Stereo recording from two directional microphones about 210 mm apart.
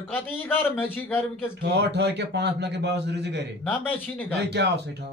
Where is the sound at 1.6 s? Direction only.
55° right (ahead or behind).